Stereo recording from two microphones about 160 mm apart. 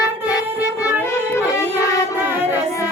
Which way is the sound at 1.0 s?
15° left (ahead or behind).